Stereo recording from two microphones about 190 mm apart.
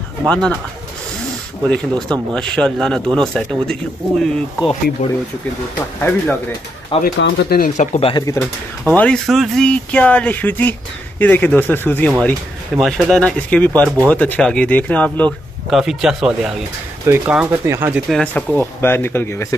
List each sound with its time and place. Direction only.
0.3 s speech: 5° left (ahead or behind)
1.7 s a man's voice: 5° left (ahead or behind)
5.0 s speech: 40° left (ahead or behind)
5.9 s speech: 10° left (ahead or behind)
7.2 s speech: 60° left (ahead or behind); by 8.1 s 40° left (ahead or behind)
8.1 s a man's voice: 15° left (ahead or behind); by 18.0 s 10° right (ahead or behind)
18.1 s speech: 5° left (ahead or behind)